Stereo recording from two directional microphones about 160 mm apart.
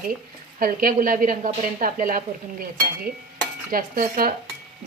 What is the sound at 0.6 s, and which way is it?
Speech, 60° right (ahead or behind).